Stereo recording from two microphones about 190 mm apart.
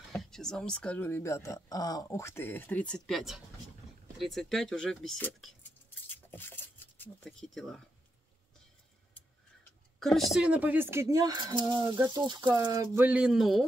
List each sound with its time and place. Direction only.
0.1 s speech: centre (ahead or behind)
6.0 s a sound: 10° left (ahead or behind)
9.9 s speech: centre (ahead or behind)